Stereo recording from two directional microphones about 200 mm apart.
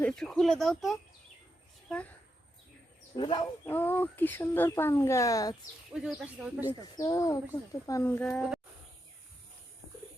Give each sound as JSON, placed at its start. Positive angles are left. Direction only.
{"t": 0.0, "sound": "a woman's voice", "side_deg": 5}
{"t": 3.2, "sound": "speech", "side_deg": 25}
{"t": 3.7, "sound": "speech", "side_deg": 10}
{"t": 5.9, "sound": "speech", "side_deg": -5}
{"t": 6.9, "sound": "speech", "side_deg": 20}